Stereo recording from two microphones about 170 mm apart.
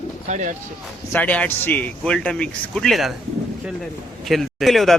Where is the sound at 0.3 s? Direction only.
45° right (ahead or behind).